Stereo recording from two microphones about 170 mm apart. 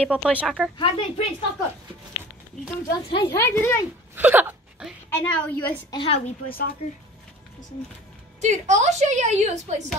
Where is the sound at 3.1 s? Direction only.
25° left (ahead or behind).